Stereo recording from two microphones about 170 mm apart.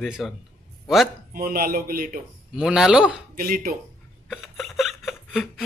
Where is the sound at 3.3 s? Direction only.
60° right (ahead or behind).